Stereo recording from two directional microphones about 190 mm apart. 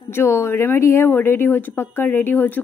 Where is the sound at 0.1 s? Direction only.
15° left (ahead or behind).